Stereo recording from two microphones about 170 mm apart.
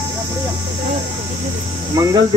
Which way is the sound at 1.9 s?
20° right (ahead or behind).